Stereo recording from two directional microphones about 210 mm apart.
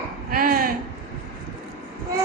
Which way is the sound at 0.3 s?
45° right (ahead or behind).